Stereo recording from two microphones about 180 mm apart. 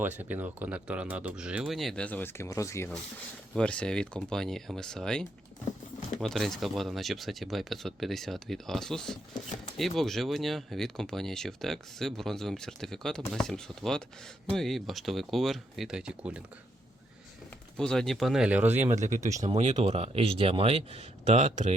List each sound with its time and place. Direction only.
0.2 s speech: 10° right (ahead or behind); by 2.9 s 15° left (ahead or behind)
3.5 s speech: 5° left (ahead or behind)
17.7 s speech: 5° left (ahead or behind)
18.9 s speech: 45° right (ahead or behind)
19.3 s speech: 20° right (ahead or behind)
19.5 s speech: 35° right (ahead or behind)